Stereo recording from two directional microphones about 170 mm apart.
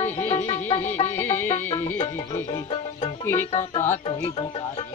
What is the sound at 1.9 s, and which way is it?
Speech, 20° left (ahead or behind).